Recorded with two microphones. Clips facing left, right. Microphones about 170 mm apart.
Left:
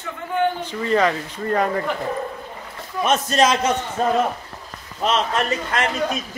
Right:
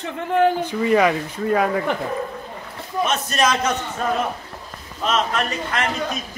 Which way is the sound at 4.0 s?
30° left (ahead or behind).